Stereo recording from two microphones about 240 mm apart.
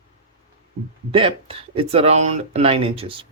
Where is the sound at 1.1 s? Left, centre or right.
Right.